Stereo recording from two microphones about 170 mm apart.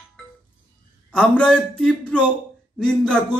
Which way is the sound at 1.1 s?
5° left (ahead or behind).